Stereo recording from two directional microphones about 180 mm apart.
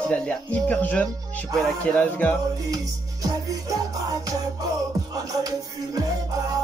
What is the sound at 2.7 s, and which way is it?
Music, 20° right (ahead or behind).